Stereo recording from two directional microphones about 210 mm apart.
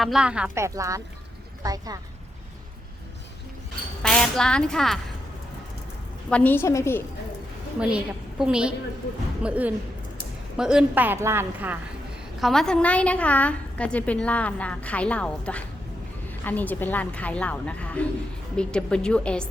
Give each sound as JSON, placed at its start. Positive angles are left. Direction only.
{"t": 0.0, "sound": "a woman's voice", "side_deg": -5}
{"t": 4.0, "sound": "speech", "side_deg": 5}
{"t": 6.3, "sound": "a woman's voice", "side_deg": 10}
{"t": 7.8, "sound": "a woman's voice", "side_deg": -5}
{"t": 12.4, "sound": "a woman's voice", "side_deg": 0}